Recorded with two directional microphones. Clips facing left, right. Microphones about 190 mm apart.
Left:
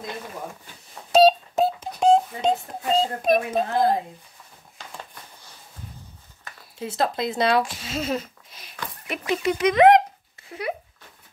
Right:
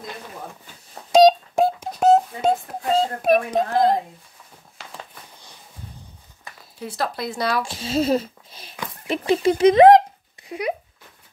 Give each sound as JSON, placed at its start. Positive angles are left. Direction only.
{"t": 1.1, "sound": "a sound", "side_deg": -15}
{"t": 6.8, "sound": "speech", "side_deg": 20}
{"t": 7.6, "sound": "a child's voice", "side_deg": -30}